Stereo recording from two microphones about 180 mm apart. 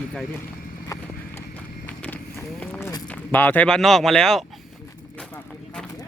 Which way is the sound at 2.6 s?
10° left (ahead or behind).